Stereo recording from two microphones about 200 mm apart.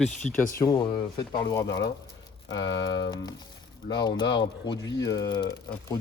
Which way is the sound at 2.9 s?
20° left (ahead or behind).